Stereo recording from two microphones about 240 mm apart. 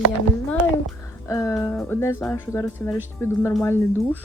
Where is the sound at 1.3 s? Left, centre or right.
Centre.